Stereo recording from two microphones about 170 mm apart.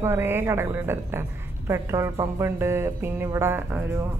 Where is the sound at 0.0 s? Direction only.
15° right (ahead or behind).